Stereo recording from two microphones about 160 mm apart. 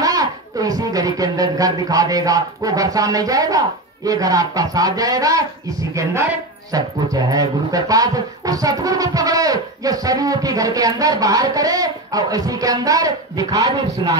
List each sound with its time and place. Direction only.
0.0 s speech: 20° right (ahead or behind)